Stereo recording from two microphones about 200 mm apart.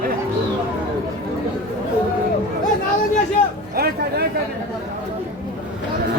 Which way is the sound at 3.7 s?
50° right (ahead or behind).